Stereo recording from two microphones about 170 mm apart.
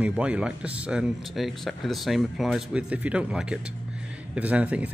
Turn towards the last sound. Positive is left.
turn(degrees=-10)  # may be behind; listen again after turning